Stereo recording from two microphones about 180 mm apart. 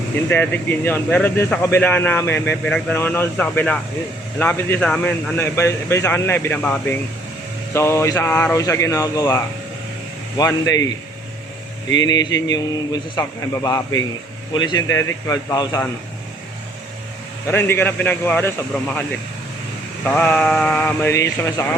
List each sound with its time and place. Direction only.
0.3 s speech: 10° left (ahead or behind)
11.9 s speech: 20° left (ahead or behind)
17.5 s speech: 10° left (ahead or behind)
20.1 s speech: 5° left (ahead or behind)